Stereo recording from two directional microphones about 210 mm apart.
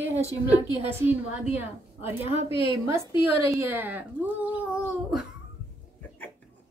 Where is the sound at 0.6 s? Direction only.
20° left (ahead or behind).